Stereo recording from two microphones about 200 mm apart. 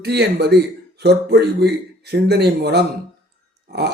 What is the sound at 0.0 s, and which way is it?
Speech, 55° right (ahead or behind).